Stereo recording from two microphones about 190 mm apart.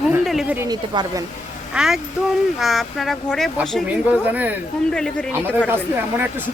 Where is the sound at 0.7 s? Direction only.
20° right (ahead or behind).